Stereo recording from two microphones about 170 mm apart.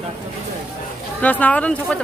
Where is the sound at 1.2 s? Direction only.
10° left (ahead or behind).